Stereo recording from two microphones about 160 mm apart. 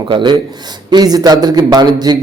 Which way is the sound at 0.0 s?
30° right (ahead or behind).